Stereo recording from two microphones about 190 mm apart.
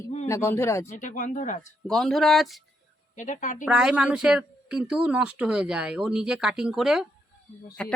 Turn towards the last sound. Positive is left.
turn(degrees=5)  # may be behind; listen again after turning